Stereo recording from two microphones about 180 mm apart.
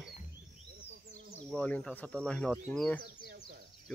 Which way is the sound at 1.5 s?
5° left (ahead or behind).